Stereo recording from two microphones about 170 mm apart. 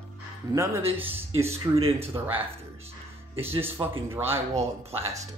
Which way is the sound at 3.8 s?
25° right (ahead or behind).